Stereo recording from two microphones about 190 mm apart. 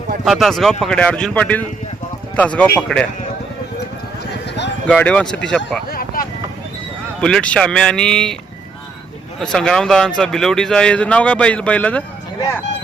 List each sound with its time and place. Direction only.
0.3 s speech: centre (ahead or behind)
4.9 s speech: 5° left (ahead or behind)
5.9 s a sound: 50° left (ahead or behind)
7.2 s speech: 5° left (ahead or behind)
9.4 s speech: 5° left (ahead or behind)